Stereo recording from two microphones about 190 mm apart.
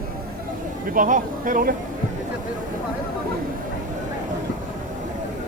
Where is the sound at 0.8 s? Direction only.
45° right (ahead or behind).